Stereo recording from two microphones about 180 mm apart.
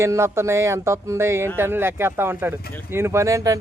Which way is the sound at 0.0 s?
15° right (ahead or behind).